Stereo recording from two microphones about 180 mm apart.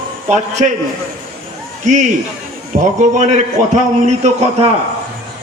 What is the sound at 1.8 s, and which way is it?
A man's voice, 40° right (ahead or behind).